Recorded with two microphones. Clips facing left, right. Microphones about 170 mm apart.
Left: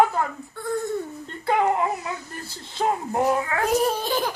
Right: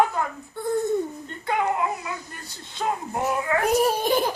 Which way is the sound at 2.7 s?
30° left (ahead or behind).